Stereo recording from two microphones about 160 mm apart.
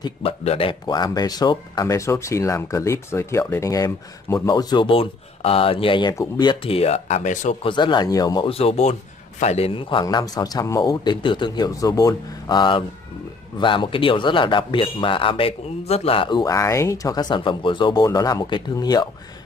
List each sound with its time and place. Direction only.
0.0 s speech: 40° left (ahead or behind)
7.6 s speech: 30° left (ahead or behind)
8.5 s a man's voice: 40° left (ahead or behind)